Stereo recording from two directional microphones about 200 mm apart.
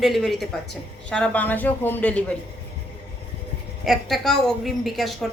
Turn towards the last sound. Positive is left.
turn(degrees=0)  # may be behind; listen again after turning